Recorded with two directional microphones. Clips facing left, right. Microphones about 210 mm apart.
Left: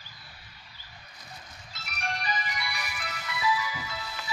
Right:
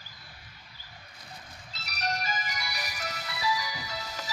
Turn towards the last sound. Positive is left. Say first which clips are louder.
# even
turn(degrees=-35)  # may be behind; listen again after turning